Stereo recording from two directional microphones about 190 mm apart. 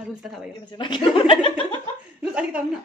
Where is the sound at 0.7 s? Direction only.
25° left (ahead or behind).